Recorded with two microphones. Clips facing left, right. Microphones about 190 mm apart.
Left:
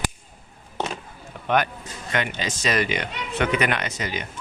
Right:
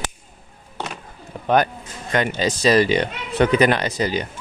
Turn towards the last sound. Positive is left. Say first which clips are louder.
# right 7 dB
turn(degrees=-35)  # may be behind; listen again after turning